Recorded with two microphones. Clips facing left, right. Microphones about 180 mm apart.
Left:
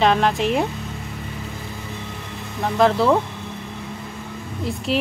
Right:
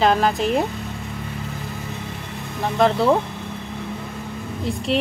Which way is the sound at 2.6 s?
Centre (ahead or behind).